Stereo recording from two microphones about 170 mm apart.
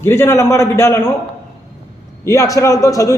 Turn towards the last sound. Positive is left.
turn(degrees=20)  # may be behind; listen again after turning